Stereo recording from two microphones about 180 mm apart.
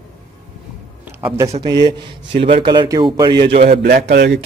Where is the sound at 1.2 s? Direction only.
15° right (ahead or behind); by 3.6 s 30° right (ahead or behind).